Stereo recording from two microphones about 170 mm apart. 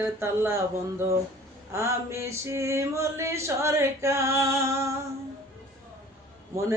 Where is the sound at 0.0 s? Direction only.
15° right (ahead or behind).